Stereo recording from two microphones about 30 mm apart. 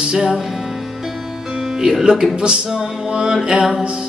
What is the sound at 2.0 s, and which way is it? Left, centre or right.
Music, right.